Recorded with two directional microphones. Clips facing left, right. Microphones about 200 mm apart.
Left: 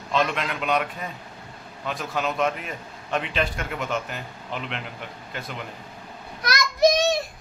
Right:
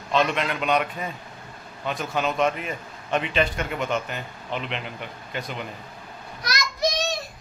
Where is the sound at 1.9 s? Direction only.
Centre (ahead or behind).